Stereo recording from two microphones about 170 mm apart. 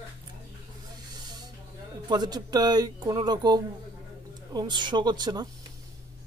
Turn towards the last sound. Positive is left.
turn(degrees=-25)  # may be behind; listen again after turning